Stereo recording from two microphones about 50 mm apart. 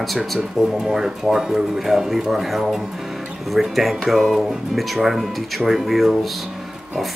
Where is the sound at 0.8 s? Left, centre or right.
Centre.